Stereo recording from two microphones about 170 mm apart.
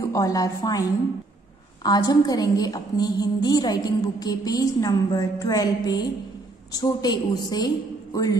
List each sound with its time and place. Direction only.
0.0 s a woman's voice: 20° left (ahead or behind)